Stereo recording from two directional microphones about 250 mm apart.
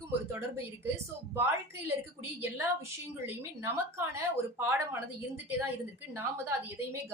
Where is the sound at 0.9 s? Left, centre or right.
Centre.